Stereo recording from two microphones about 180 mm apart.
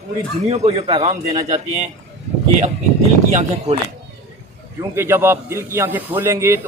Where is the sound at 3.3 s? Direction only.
35° right (ahead or behind).